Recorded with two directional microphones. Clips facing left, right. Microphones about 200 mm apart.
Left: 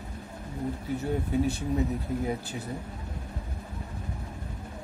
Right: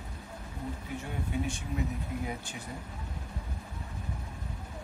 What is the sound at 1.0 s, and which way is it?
Speech, 35° left (ahead or behind).